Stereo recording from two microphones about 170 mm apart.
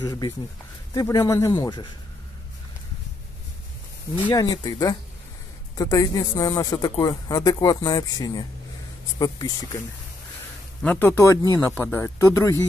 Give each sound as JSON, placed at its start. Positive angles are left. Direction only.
{"t": 0.0, "sound": "speech", "side_deg": 25}
{"t": 4.3, "sound": "speech", "side_deg": 20}
{"t": 10.8, "sound": "speech", "side_deg": 10}